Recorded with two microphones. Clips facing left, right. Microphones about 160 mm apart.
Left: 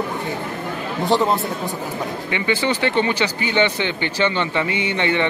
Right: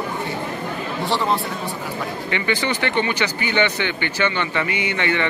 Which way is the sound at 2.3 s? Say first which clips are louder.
Left 2 dB; 15° left (ahead or behind).